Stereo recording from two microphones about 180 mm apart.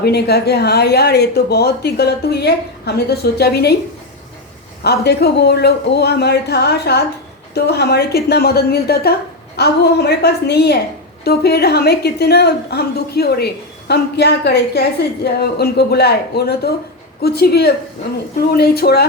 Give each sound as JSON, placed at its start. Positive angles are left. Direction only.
{"t": 0.0, "sound": "a woman's voice", "side_deg": 60}
{"t": 4.8, "sound": "a woman's voice", "side_deg": 65}